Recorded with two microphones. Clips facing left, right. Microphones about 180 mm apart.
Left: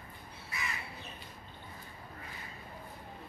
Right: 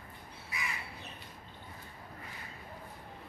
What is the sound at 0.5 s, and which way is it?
Crow, 15° right (ahead or behind).